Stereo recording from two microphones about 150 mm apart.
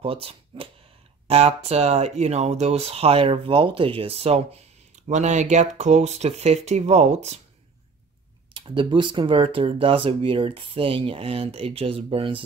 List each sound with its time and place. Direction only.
0.0 s speech: 40° right (ahead or behind)
8.5 s speech: 35° right (ahead or behind)